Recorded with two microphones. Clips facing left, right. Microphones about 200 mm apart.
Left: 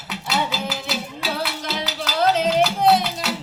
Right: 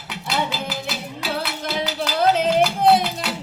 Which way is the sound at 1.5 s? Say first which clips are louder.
Right 2 dB; 50° right (ahead or behind).